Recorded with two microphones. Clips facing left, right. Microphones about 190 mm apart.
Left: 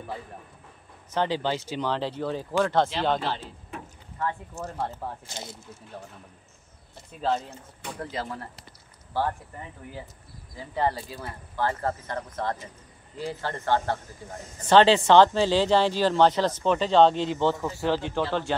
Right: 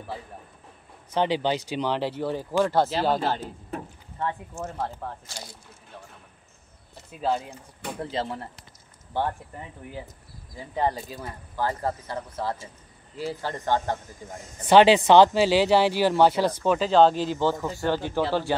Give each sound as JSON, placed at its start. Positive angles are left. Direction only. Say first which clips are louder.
{"t": 1.1, "sound": "speech", "louder": "right 2 dB", "side_deg": -15}
{"t": 3.2, "sound": "speech", "louder": "right 4 dB", "side_deg": -40}
{"t": 5.3, "sound": "speech", "louder": "left 3 dB", "side_deg": 25}
{"t": 7.1, "sound": "speech", "louder": "right 1 dB", "side_deg": -5}
{"t": 8.0, "sound": "speech", "louder": "right 3 dB", "side_deg": -25}
{"t": 10.7, "sound": "speech", "louder": "right 1 dB", "side_deg": -15}